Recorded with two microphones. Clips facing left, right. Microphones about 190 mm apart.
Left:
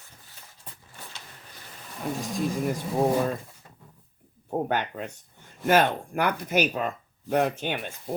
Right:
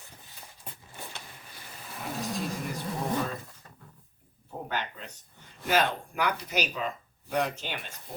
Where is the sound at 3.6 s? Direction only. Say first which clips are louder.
Left 1 dB; 10° left (ahead or behind).